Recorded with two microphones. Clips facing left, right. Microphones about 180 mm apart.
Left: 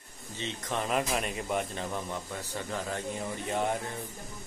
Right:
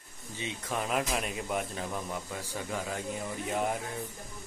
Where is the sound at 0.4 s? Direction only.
10° right (ahead or behind).